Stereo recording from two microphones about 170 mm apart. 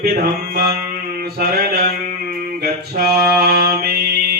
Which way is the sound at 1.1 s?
65° right (ahead or behind).